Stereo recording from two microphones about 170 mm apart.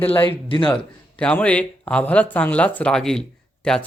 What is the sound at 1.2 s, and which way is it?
Speech, 5° left (ahead or behind).